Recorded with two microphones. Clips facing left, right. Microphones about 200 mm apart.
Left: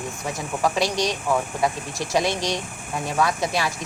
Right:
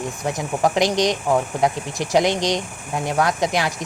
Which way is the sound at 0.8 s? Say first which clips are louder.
Right 5 dB; 15° right (ahead or behind).